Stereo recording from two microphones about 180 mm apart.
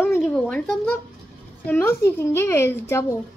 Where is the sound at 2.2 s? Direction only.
15° left (ahead or behind).